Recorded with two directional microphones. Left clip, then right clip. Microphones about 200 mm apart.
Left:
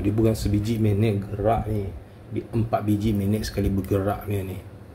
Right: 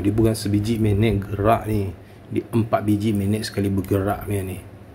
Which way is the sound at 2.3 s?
35° right (ahead or behind).